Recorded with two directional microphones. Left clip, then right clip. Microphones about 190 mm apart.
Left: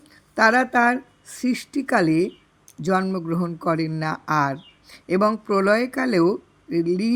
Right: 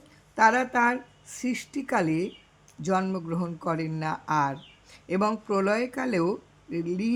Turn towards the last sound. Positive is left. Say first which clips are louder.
# left 8 dB
turn(degrees=20)  # may be behind; listen again after turning